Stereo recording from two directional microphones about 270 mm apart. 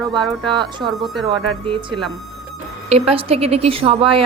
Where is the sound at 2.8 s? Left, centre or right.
Right.